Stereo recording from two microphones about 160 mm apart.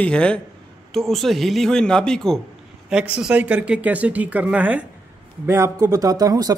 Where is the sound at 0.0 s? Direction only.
5° left (ahead or behind).